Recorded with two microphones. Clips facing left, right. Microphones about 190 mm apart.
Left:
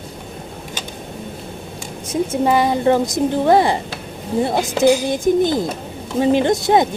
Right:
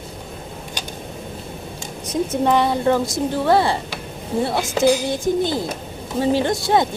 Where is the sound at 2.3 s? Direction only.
10° left (ahead or behind).